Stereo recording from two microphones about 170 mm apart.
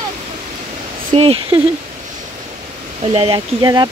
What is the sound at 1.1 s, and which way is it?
Speech, 35° right (ahead or behind).